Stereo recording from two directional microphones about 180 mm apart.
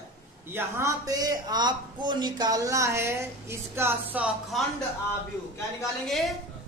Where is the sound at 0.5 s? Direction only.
15° right (ahead or behind).